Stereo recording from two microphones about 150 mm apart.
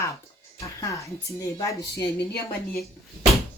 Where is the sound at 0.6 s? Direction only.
20° left (ahead or behind).